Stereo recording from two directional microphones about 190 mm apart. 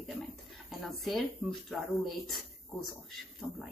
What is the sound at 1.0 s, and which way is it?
A woman's voice, centre (ahead or behind).